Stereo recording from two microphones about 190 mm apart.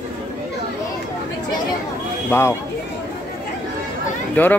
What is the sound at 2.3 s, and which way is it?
Speech, 15° left (ahead or behind).